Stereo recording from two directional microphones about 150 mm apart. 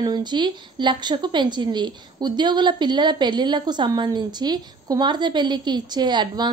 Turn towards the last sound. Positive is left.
turn(degrees=-30)  # may be behind; listen again after turning